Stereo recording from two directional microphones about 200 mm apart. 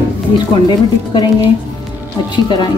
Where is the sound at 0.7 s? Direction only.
20° left (ahead or behind).